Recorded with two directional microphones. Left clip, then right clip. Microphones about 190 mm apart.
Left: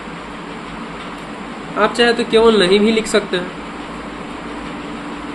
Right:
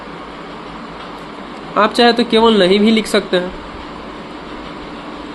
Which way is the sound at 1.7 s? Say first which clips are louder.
Right 3 dB; 40° right (ahead or behind).